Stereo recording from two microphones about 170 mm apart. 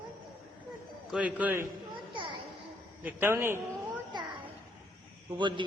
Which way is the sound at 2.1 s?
30° right (ahead or behind).